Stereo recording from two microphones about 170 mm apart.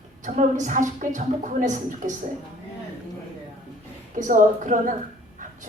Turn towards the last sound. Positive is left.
turn(degrees=-50)  # may be behind; listen again after turning